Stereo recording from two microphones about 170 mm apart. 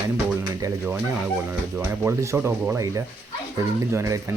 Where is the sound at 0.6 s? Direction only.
10° right (ahead or behind).